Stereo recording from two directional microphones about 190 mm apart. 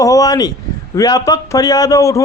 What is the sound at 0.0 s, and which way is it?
Speech, 20° left (ahead or behind).